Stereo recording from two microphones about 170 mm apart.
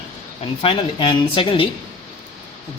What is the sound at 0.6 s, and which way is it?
Speech, 30° left (ahead or behind).